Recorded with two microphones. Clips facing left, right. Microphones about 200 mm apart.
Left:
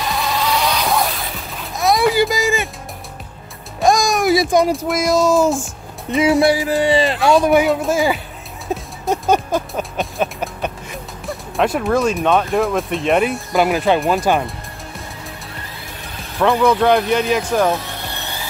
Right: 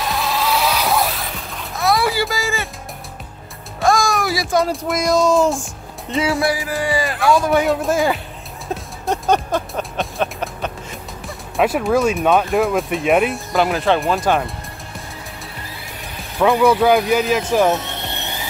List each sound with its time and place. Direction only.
0.0 s vehicle: centre (ahead or behind)
1.8 s music: 20° left (ahead or behind)
3.8 s a sound: 20° left (ahead or behind)
4.8 s speech: centre (ahead or behind)
6.1 s speech: 20° left (ahead or behind)
7.6 s speech: centre (ahead or behind)
8.7 s music: 10° left (ahead or behind)
11.2 s speech: centre (ahead or behind)
16.3 s speech: 5° right (ahead or behind)
17.7 s music: 20° right (ahead or behind)